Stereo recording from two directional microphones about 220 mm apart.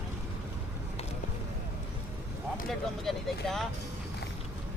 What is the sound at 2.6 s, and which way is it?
Speech, centre (ahead or behind).